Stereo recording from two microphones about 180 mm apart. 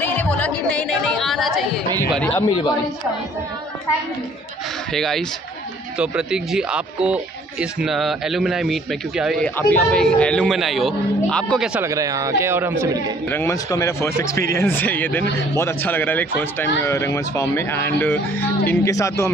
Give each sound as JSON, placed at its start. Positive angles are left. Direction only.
{"t": 0.0, "sound": "music", "side_deg": 10}
{"t": 2.1, "sound": "speech", "side_deg": 10}
{"t": 4.9, "sound": "a man's voice", "side_deg": 0}
{"t": 9.6, "sound": "a man's voice", "side_deg": 10}
{"t": 11.8, "sound": "speech", "side_deg": -20}
{"t": 13.3, "sound": "speech", "side_deg": 15}